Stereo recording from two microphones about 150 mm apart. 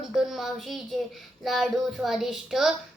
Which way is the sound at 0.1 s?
Centre (ahead or behind).